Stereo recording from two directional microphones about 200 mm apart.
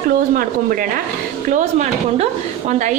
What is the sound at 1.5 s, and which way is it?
Speech, 35° right (ahead or behind).